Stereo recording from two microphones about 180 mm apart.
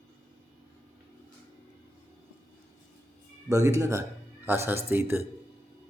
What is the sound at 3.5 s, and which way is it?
Speech, 20° right (ahead or behind).